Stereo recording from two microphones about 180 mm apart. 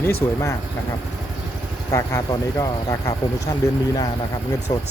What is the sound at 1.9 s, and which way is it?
Speech, 15° left (ahead or behind).